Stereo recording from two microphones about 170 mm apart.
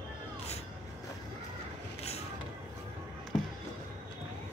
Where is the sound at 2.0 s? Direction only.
40° left (ahead or behind).